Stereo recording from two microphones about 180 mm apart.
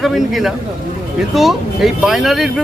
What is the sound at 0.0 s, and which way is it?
Speech, centre (ahead or behind).